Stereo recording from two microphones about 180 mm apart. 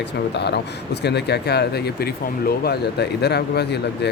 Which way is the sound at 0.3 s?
70° left (ahead or behind).